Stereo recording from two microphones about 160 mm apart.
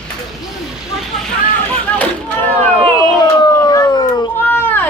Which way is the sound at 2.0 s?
10° left (ahead or behind).